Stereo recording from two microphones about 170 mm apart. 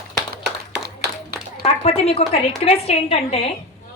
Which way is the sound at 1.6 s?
35° left (ahead or behind).